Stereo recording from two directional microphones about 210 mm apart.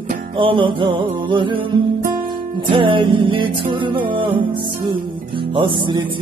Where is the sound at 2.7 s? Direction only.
25° right (ahead or behind).